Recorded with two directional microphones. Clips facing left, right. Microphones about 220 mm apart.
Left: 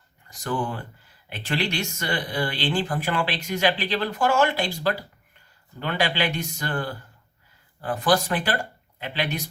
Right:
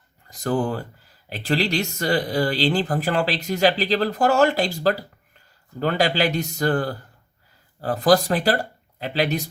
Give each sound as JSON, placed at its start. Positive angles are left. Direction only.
{"t": 0.3, "sound": "speech", "side_deg": -40}